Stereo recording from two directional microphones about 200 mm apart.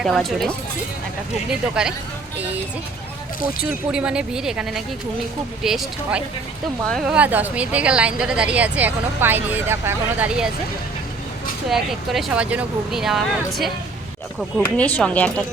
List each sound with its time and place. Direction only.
0.0 s speech: centre (ahead or behind)
3.6 s speech: 5° right (ahead or behind)
11.7 s speech: 5° right (ahead or behind)